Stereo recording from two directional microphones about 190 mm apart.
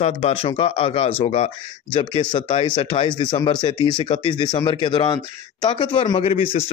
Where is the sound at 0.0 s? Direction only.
30° left (ahead or behind).